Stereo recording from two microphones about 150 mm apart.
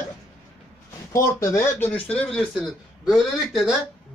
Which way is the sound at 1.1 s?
20° left (ahead or behind).